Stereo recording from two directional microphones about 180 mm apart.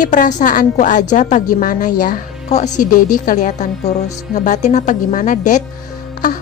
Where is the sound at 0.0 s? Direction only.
45° left (ahead or behind).